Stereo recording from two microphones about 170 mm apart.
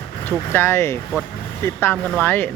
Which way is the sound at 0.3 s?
10° left (ahead or behind).